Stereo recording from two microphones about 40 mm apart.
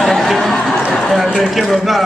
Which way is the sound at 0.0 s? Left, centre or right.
Centre.